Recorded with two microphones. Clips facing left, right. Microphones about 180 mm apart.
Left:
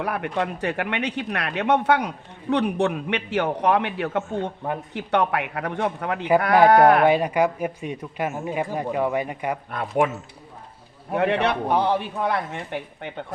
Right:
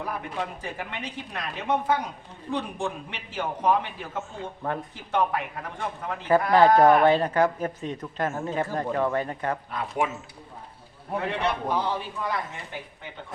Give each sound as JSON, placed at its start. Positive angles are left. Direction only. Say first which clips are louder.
{"t": 0.0, "sound": "speech", "louder": "left 6 dB", "side_deg": 70}
{"t": 7.0, "sound": "speech", "louder": "left 2 dB", "side_deg": 10}
{"t": 9.7, "sound": "a man's voice", "louder": "left 8 dB", "side_deg": 65}
{"t": 11.1, "sound": "a man's voice", "louder": "left 6 dB", "side_deg": 70}